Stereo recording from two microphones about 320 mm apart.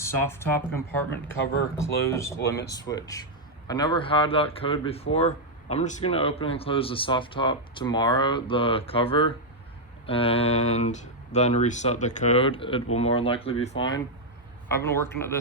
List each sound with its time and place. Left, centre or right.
0.0 s a man's voice: centre